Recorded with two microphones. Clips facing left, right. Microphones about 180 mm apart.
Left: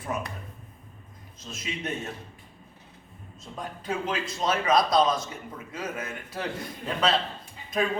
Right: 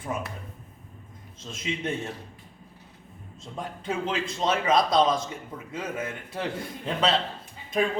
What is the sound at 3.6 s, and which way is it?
A man's voice, 25° right (ahead or behind).